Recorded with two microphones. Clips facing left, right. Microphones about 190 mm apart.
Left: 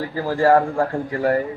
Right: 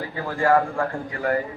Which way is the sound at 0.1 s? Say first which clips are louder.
Left 4 dB; 35° left (ahead or behind).